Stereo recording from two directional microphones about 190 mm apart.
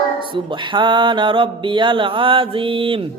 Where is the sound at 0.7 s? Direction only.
25° right (ahead or behind).